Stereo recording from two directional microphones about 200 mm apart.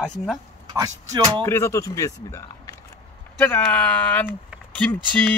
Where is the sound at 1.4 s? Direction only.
15° left (ahead or behind).